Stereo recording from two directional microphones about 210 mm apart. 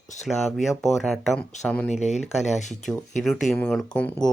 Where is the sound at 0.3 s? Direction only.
Centre (ahead or behind).